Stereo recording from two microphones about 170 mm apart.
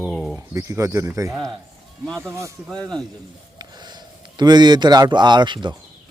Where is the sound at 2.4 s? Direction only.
15° right (ahead or behind).